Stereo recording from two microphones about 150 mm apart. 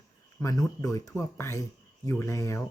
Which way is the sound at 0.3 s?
20° left (ahead or behind).